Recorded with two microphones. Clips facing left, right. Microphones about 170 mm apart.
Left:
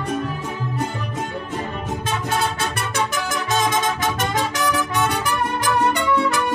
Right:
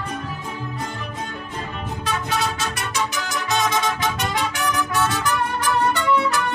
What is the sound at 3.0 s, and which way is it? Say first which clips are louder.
Music: left 2 dB; 50° left (ahead or behind).